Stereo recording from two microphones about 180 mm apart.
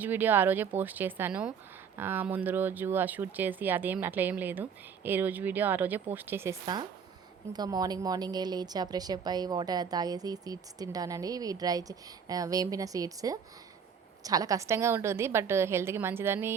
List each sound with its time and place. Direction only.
0.0 s a woman's voice: 10° right (ahead or behind)